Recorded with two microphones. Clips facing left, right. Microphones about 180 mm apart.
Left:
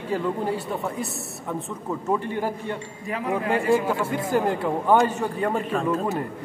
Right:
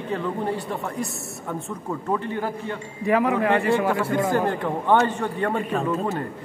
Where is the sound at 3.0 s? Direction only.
75° right (ahead or behind).